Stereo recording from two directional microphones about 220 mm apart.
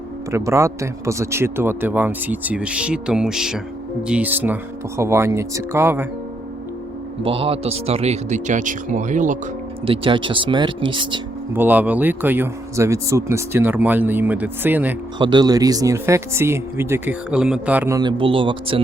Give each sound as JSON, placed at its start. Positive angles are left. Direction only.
{"t": 0.3, "sound": "speech", "side_deg": -15}
{"t": 7.2, "sound": "speech", "side_deg": -25}
{"t": 9.8, "sound": "speech", "side_deg": -25}
{"t": 11.5, "sound": "speech", "side_deg": -10}
{"t": 15.2, "sound": "speech", "side_deg": -20}